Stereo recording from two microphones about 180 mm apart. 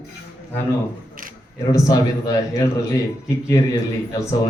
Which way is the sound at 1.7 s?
20° left (ahead or behind).